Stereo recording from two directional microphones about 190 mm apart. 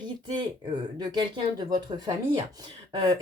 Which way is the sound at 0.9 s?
20° right (ahead or behind).